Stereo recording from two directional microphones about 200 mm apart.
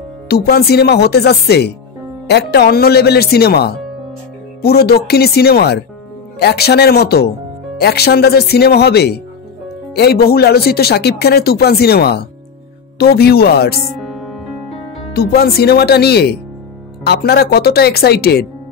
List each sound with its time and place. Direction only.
0.3 s speech: 50° left (ahead or behind)
15.1 s speech: 50° left (ahead or behind)